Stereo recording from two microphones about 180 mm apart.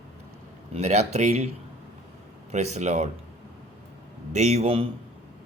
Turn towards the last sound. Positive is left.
turn(degrees=-35)  # may be behind; listen again after turning